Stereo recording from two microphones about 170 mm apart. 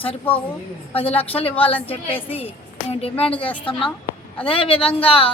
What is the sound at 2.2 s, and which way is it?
A woman's voice, 35° left (ahead or behind).